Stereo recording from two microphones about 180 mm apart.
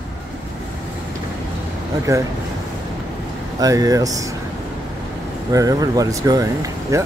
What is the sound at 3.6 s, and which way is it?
Speech, 20° right (ahead or behind).